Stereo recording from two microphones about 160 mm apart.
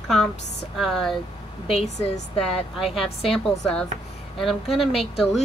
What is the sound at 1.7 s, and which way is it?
Speech, 45° left (ahead or behind).